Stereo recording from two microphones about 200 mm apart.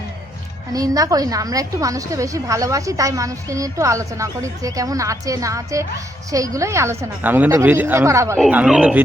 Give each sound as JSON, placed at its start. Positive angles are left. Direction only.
{"t": 0.7, "sound": "a woman's voice", "side_deg": -15}